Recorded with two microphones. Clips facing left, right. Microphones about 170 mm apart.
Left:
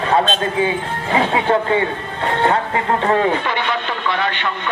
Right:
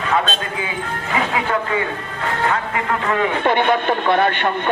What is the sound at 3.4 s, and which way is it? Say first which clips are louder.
A man's voice: right 5 dB; 50° right (ahead or behind).